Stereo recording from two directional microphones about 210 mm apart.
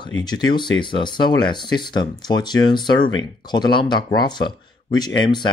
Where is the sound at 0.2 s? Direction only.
20° left (ahead or behind).